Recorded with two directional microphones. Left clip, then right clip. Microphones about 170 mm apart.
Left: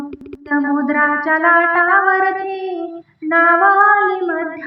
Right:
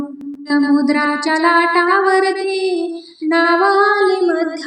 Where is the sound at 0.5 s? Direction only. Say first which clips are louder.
Right 2 dB; 35° right (ahead or behind).